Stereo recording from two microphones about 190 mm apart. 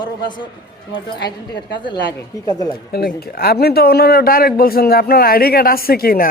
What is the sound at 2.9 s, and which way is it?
A man's voice, 55° left (ahead or behind).